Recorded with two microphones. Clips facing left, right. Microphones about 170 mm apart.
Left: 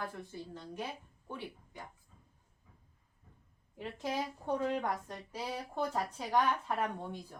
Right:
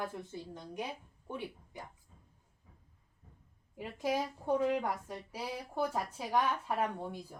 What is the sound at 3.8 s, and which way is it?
A woman's voice, 10° right (ahead or behind).